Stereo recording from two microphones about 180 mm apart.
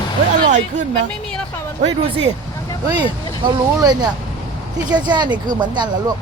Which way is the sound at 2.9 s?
25° right (ahead or behind).